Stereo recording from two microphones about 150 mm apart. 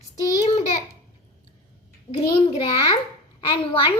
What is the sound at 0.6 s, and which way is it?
Speech, 45° left (ahead or behind).